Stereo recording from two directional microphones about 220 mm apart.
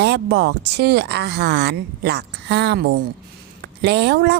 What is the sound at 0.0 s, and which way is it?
A woman's voice, 50° right (ahead or behind).